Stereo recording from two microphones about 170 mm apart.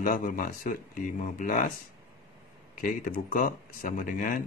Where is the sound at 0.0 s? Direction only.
55° left (ahead or behind).